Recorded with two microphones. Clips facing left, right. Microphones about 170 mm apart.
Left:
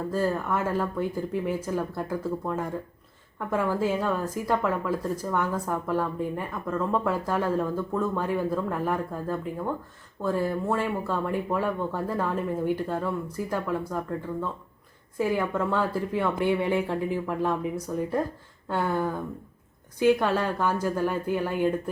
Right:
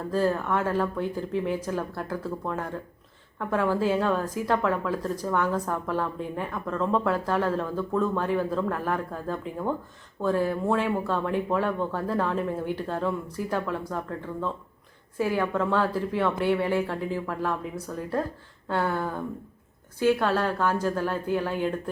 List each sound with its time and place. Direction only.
0.1 s a woman's voice: 10° left (ahead or behind)
15.2 s a woman's voice: 10° left (ahead or behind)